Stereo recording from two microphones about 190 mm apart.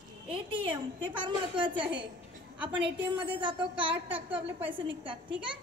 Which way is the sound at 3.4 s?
25° right (ahead or behind).